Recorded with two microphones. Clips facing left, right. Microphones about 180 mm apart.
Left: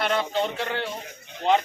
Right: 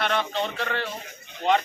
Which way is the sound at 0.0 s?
25° left (ahead or behind).